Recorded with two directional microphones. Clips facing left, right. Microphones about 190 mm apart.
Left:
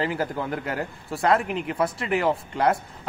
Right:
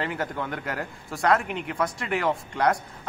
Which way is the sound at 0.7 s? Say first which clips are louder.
Left 3 dB; 30° left (ahead or behind).